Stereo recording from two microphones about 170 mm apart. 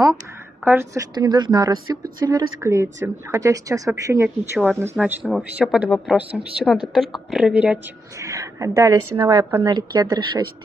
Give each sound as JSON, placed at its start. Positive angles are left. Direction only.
{"t": 0.7, "sound": "speech", "side_deg": -15}
{"t": 1.2, "sound": "a woman's voice", "side_deg": -25}
{"t": 8.3, "sound": "a woman's voice", "side_deg": -20}